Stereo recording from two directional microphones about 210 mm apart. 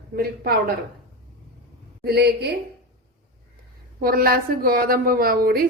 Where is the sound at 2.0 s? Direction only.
50° right (ahead or behind).